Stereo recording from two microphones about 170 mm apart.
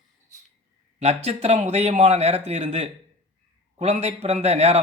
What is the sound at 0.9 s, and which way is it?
Speech, 40° right (ahead or behind).